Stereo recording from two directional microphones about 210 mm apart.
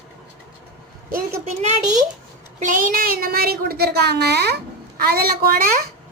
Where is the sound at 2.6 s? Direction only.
40° right (ahead or behind).